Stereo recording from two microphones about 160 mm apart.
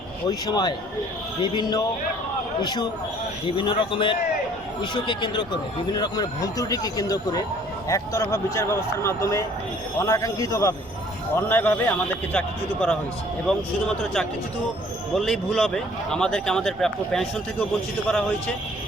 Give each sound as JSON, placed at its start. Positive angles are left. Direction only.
{"t": 0.3, "sound": "a man's voice", "side_deg": 25}
{"t": 15.1, "sound": "speech", "side_deg": 0}